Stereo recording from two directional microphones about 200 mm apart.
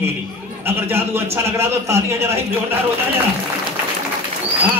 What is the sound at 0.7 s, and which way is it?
A man's voice, 10° right (ahead or behind).